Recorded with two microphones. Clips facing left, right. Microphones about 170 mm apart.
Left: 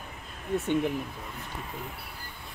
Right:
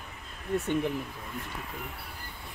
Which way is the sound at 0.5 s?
Centre (ahead or behind).